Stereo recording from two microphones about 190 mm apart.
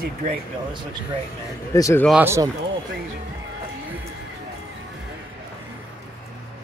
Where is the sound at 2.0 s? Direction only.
10° right (ahead or behind).